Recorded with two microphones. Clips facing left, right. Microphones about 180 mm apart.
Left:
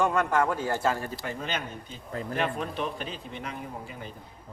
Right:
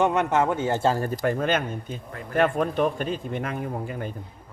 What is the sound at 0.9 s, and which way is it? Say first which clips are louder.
Speech: right 9 dB; 45° right (ahead or behind).